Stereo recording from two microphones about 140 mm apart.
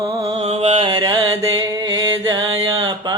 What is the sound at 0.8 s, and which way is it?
Music, 30° right (ahead or behind).